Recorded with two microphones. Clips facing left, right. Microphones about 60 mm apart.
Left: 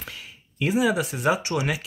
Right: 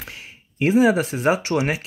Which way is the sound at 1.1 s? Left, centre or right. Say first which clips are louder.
Right 4 dB; right.